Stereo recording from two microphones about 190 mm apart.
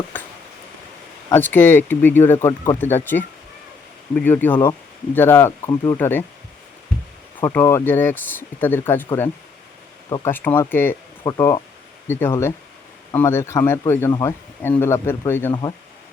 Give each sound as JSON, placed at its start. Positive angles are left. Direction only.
{"t": 0.1, "sound": "a sound", "side_deg": 10}
{"t": 1.5, "sound": "speech", "side_deg": 10}
{"t": 7.4, "sound": "speech", "side_deg": 15}
{"t": 10.1, "sound": "speech", "side_deg": 10}